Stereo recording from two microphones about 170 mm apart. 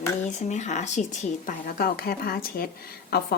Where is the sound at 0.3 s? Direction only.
45° left (ahead or behind).